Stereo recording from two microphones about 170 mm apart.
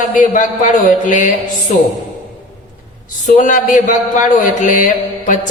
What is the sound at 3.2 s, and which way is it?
A man's voice, 50° left (ahead or behind).